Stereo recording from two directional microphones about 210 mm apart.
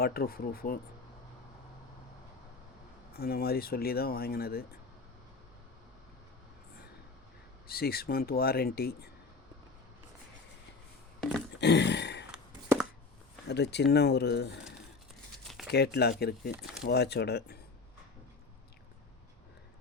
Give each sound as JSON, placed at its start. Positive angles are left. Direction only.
{"t": 0.0, "sound": "speech", "side_deg": 45}
{"t": 3.2, "sound": "speech", "side_deg": 45}
{"t": 7.7, "sound": "speech", "side_deg": 45}
{"t": 11.2, "sound": "a sound", "side_deg": 0}
{"t": 11.6, "sound": "a sound", "side_deg": 55}
{"t": 13.5, "sound": "speech", "side_deg": 55}
{"t": 15.7, "sound": "speech", "side_deg": 50}
{"t": 16.6, "sound": "speech", "side_deg": 0}
{"t": 16.8, "sound": "speech", "side_deg": 50}